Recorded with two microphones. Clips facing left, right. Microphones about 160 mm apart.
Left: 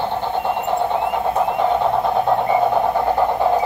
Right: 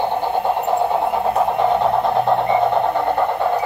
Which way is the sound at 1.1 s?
Centre (ahead or behind).